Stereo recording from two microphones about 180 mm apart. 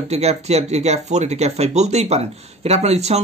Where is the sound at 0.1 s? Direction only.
35° right (ahead or behind).